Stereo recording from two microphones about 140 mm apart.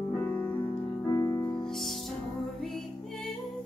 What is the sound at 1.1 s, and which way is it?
Music, 25° left (ahead or behind).